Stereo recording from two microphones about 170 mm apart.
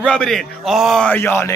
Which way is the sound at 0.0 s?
5° left (ahead or behind).